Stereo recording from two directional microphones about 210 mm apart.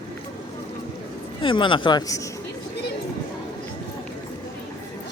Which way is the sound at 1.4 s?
25° left (ahead or behind).